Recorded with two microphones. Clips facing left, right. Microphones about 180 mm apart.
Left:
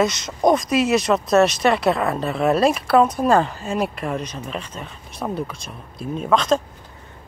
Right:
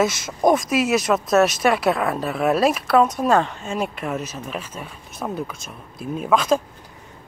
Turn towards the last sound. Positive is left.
turn(degrees=-5)  # may be behind; listen again after turning